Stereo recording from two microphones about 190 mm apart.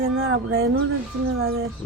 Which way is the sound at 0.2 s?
90° right.